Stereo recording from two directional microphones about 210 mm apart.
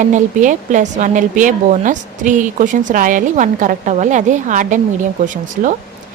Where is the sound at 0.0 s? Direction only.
35° right (ahead or behind).